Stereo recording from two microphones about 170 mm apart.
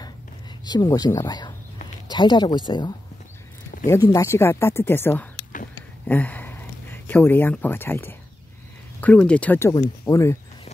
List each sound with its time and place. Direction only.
0.7 s speech: 25° left (ahead or behind)